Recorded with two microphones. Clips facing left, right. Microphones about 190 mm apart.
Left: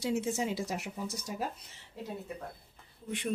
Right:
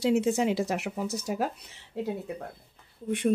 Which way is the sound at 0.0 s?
65° right (ahead or behind).